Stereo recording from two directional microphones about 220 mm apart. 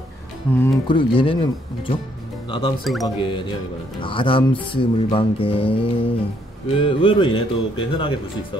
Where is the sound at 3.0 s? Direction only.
20° left (ahead or behind).